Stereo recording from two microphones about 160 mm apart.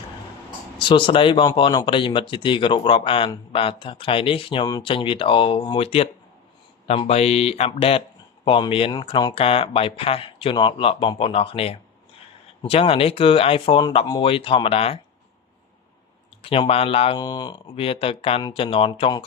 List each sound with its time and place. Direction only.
0.8 s speech: 30° left (ahead or behind)
16.4 s speech: 35° left (ahead or behind)
17.2 s speech: 25° left (ahead or behind)